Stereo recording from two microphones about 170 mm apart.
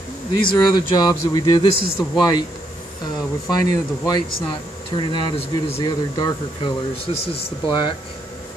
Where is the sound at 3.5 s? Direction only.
20° left (ahead or behind).